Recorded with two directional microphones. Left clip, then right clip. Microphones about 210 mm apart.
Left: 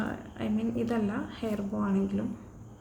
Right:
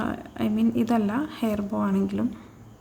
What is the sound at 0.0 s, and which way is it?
A woman's voice, 50° right (ahead or behind).